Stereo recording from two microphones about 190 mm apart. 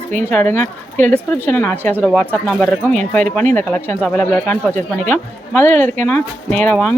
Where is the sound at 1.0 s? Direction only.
10° left (ahead or behind).